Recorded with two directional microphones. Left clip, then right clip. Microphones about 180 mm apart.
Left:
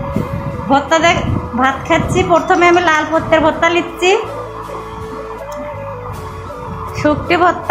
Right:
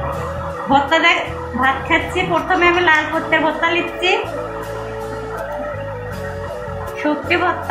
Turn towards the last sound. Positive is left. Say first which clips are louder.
# left 5 dB
turn(degrees=70)  # may be behind; listen again after turning